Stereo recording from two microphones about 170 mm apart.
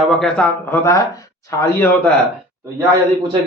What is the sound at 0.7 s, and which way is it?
Speech, 15° left (ahead or behind).